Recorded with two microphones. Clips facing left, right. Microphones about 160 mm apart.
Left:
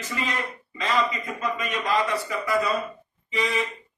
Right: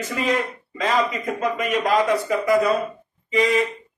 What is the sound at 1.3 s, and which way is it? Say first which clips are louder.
Speech: right 7 dB; 55° right (ahead or behind).